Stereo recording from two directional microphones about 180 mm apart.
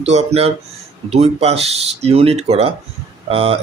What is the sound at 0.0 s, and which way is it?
Speech, 40° right (ahead or behind).